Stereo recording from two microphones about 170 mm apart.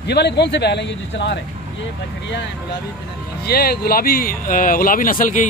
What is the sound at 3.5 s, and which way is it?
Speech, 65° left (ahead or behind).